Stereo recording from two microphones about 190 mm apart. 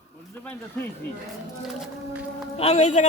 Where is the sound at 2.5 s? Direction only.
30° left (ahead or behind).